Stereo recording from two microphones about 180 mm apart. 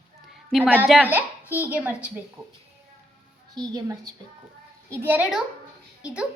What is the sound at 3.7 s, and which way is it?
Speech, 20° right (ahead or behind).